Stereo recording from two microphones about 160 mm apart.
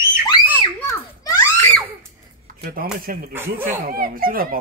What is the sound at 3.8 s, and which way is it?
Speech, 65° right (ahead or behind).